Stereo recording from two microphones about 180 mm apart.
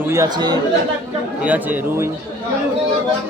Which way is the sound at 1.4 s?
10° right (ahead or behind).